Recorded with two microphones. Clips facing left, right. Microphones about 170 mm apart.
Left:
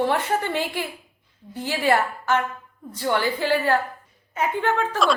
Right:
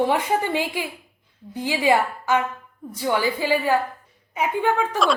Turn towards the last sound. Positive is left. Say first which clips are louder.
# right 1 dB
turn(degrees=-10)  # may be behind; listen again after turning